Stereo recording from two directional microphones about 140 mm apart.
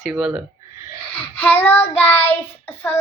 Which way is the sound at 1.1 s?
10° left (ahead or behind).